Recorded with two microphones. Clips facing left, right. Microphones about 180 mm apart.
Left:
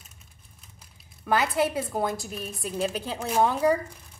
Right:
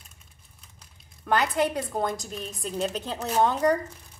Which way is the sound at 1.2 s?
Centre (ahead or behind).